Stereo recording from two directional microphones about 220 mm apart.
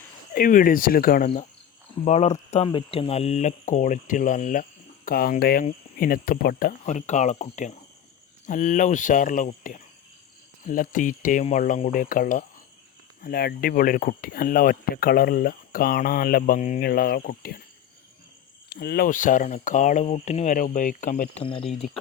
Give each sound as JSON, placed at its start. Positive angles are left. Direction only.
{"t": 0.3, "sound": "speech", "side_deg": 40}
{"t": 18.7, "sound": "speech", "side_deg": 45}